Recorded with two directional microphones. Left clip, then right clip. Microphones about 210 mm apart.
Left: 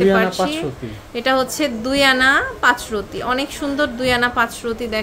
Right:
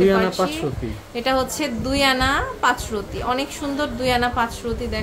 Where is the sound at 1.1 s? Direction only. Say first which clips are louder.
Left 3 dB; 20° left (ahead or behind).